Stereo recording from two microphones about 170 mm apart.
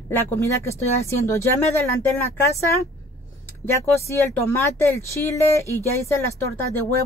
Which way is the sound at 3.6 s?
15° left (ahead or behind).